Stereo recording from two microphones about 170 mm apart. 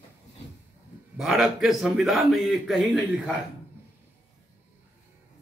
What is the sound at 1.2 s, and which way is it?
A man's voice, centre (ahead or behind).